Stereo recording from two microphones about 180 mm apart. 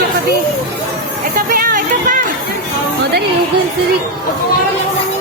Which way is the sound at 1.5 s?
50° right (ahead or behind).